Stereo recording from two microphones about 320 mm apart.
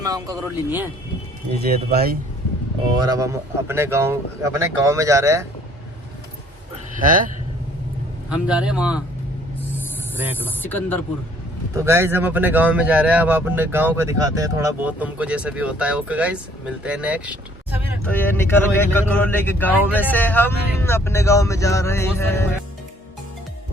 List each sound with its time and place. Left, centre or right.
0.0 s a man's voice: centre
1.9 s speech: right
2.9 s a man's voice: centre
7.0 s speech: right
8.3 s speech: centre
10.4 s speech: centre
11.8 s speech: centre
18.1 s speech: centre